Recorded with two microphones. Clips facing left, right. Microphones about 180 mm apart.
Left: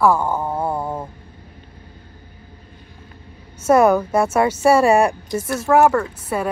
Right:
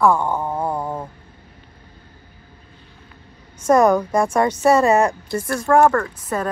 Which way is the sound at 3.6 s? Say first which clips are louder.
Left 1 dB; 10° left (ahead or behind).